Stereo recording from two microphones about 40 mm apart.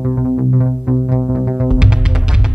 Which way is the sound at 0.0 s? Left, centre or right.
Centre.